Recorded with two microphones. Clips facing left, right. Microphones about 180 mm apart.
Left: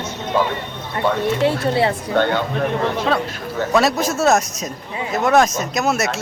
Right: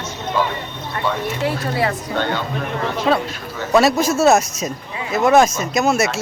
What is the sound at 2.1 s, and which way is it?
Speech, 55° left (ahead or behind).